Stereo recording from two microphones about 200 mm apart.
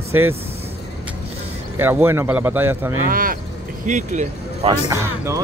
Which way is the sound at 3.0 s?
45° right (ahead or behind).